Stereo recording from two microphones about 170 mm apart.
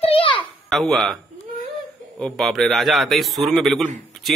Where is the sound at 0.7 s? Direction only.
Centre (ahead or behind).